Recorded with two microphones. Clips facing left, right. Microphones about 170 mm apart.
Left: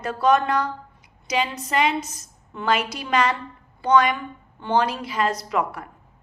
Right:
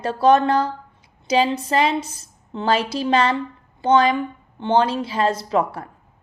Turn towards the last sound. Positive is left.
turn(degrees=-30)  # may be behind; listen again after turning